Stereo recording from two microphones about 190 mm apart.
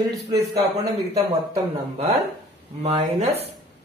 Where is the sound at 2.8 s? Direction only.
30° right (ahead or behind).